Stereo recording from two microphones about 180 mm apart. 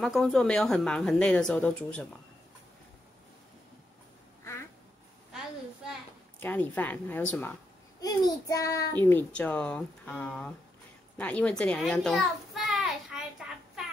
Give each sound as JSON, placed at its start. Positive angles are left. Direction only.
{"t": 0.0, "sound": "speech", "side_deg": 0}
{"t": 6.4, "sound": "speech", "side_deg": 10}
{"t": 8.0, "sound": "child singing", "side_deg": 20}
{"t": 8.9, "sound": "speech", "side_deg": 10}
{"t": 11.1, "sound": "a sound", "side_deg": 5}